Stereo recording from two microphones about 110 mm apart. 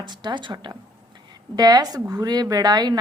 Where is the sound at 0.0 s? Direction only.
45° right (ahead or behind).